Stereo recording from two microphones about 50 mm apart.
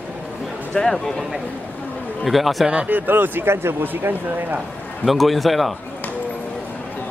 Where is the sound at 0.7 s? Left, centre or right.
Centre.